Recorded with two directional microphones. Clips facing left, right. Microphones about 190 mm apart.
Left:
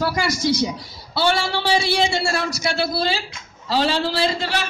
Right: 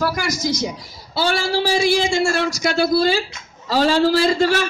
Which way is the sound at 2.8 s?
45° right (ahead or behind).